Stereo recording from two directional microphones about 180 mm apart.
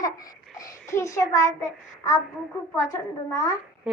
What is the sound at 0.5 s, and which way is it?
A child's voice, 15° left (ahead or behind).